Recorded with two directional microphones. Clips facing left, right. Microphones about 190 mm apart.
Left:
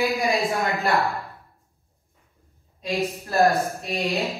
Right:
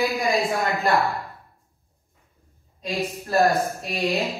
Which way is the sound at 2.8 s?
Centre (ahead or behind).